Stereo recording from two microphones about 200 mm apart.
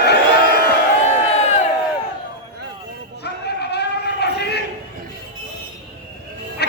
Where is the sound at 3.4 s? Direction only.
55° left (ahead or behind).